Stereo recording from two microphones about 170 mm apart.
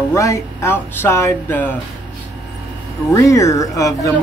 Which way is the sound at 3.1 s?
20° left (ahead or behind).